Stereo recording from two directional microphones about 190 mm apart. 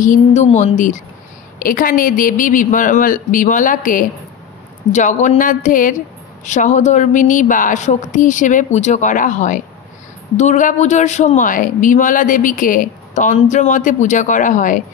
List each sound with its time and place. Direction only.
0.0 s a woman's voice: 40° left (ahead or behind)